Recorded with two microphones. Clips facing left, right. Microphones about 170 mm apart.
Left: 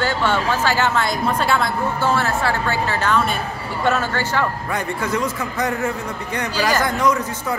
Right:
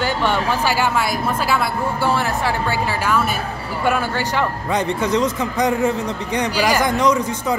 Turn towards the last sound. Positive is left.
turn(degrees=-20)  # may be behind; listen again after turning